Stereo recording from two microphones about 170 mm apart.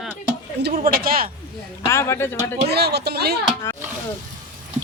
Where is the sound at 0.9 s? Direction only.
60° right (ahead or behind).